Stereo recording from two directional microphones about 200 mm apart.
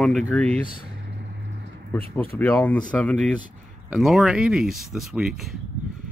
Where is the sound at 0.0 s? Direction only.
5° left (ahead or behind).